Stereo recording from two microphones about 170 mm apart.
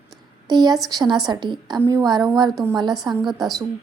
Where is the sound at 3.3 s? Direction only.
Centre (ahead or behind).